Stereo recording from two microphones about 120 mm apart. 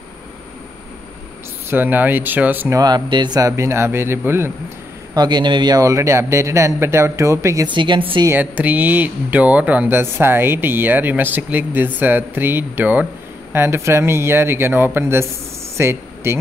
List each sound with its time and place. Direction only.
1.7 s speech: 15° right (ahead or behind)
2.7 s speech: 35° right (ahead or behind)
5.1 s speech: 35° right (ahead or behind)
7.6 s a woman's voice: 40° right (ahead or behind)
8.3 s speech: 15° right (ahead or behind)